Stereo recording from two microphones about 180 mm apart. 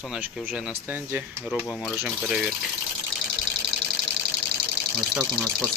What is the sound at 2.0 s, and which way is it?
Speech, centre (ahead or behind).